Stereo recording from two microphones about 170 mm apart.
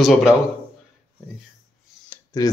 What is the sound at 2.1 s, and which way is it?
Clicking, 20° left (ahead or behind).